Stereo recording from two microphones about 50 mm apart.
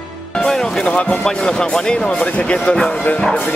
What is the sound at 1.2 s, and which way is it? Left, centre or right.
Speech, centre.